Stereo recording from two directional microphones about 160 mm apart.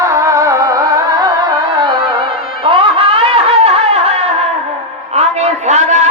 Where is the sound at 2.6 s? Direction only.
35° right (ahead or behind).